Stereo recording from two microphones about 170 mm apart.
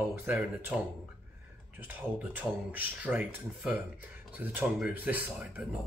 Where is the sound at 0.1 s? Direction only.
10° right (ahead or behind).